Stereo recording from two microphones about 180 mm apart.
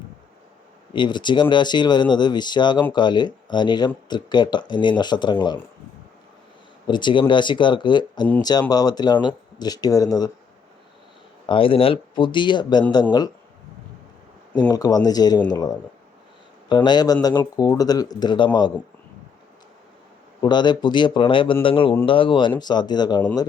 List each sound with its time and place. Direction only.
0.9 s speech: 25° left (ahead or behind)
6.8 s speech: 25° left (ahead or behind)
11.4 s speech: 30° left (ahead or behind)
14.7 s speech: 20° left (ahead or behind)
20.4 s speech: 25° left (ahead or behind)